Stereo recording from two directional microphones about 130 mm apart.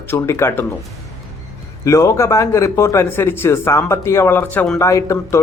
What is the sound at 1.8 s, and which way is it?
Speech, 25° left (ahead or behind).